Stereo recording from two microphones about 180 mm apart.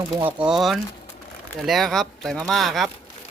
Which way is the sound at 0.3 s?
5° right (ahead or behind).